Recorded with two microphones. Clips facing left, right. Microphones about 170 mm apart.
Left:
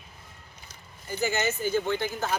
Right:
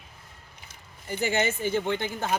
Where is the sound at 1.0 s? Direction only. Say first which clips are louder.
Right 1 dB; 30° right (ahead or behind).